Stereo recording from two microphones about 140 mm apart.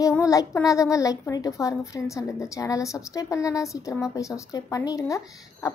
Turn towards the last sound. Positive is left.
turn(degrees=25)  # may be behind; listen again after turning